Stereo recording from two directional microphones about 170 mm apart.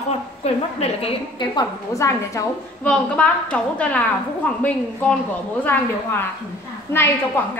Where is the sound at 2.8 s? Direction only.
5° left (ahead or behind).